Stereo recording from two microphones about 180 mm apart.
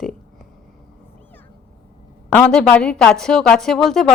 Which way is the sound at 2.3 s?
5° left (ahead or behind).